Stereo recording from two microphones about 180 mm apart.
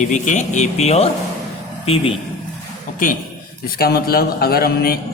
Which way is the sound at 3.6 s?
60° left (ahead or behind).